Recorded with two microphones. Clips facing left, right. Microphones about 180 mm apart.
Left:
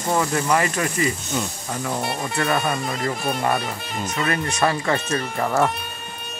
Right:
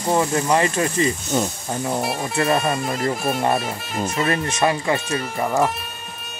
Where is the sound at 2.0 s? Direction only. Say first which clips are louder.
Right 2 dB; centre (ahead or behind).